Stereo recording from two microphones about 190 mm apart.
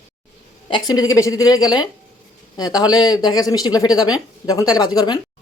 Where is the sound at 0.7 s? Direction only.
20° left (ahead or behind).